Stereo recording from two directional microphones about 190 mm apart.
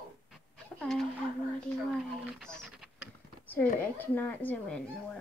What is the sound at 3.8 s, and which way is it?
Speech, 10° left (ahead or behind).